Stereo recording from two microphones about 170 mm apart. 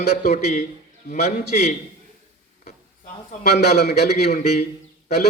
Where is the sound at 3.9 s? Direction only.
75° left (ahead or behind).